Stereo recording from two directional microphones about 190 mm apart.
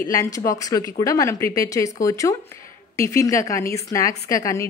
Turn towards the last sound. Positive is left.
turn(degrees=15)  # may be behind; listen again after turning